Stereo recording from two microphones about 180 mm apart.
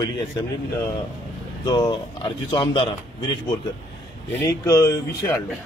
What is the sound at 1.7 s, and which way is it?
Speech, 25° left (ahead or behind).